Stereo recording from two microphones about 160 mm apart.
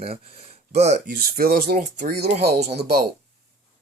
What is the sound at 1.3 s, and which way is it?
Speech, 65° right (ahead or behind).